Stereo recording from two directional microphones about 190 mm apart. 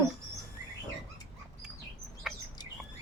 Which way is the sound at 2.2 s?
5° right (ahead or behind).